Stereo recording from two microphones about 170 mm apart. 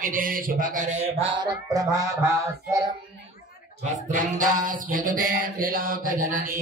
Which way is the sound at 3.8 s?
50° right (ahead or behind).